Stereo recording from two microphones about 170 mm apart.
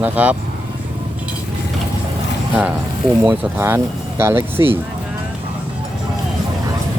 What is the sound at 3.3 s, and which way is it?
Speech, 15° right (ahead or behind).